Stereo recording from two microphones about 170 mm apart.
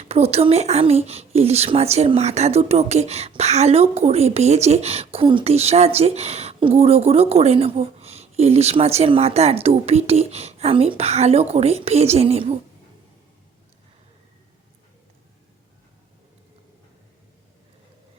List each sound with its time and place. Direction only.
0.0 s speech: 40° right (ahead or behind)